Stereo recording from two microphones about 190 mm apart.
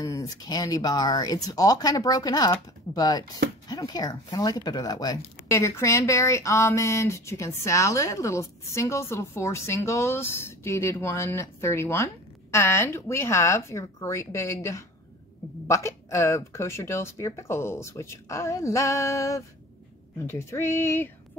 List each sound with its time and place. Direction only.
0.0 s speech: 20° left (ahead or behind)